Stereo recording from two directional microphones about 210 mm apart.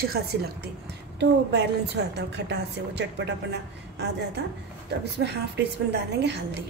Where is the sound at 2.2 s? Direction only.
55° right (ahead or behind).